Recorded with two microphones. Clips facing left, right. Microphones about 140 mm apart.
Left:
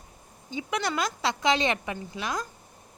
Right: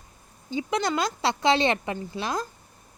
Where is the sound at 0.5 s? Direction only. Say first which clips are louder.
Right 3 dB; 25° right (ahead or behind).